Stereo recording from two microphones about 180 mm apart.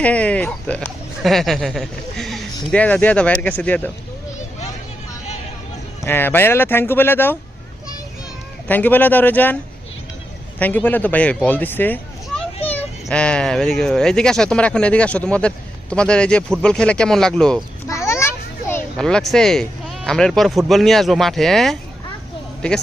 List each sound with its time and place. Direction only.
0.0 s speech: 5° left (ahead or behind)
6.1 s speech: 10° left (ahead or behind)
8.6 s speech: 10° left (ahead or behind)
10.6 s speech: 10° left (ahead or behind)
13.1 s speech: 5° left (ahead or behind)
17.8 s children playing: 15° left (ahead or behind)
18.9 s speech: 5° left (ahead or behind)